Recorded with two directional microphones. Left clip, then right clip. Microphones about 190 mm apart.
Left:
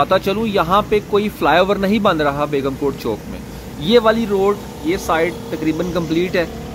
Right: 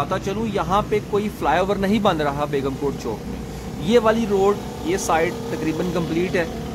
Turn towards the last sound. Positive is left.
turn(degrees=15)  # may be behind; listen again after turning